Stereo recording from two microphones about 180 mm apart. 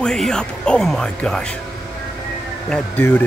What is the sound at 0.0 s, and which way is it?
Speech, 5° left (ahead or behind).